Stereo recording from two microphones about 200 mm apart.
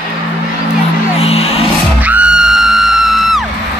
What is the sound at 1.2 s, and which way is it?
Music, 30° left (ahead or behind).